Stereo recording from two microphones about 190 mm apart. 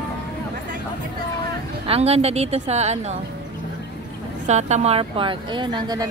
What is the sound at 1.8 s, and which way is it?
A woman's voice, 30° right (ahead or behind).